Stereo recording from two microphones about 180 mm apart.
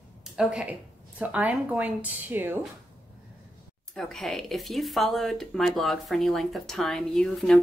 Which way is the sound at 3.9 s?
Centre (ahead or behind).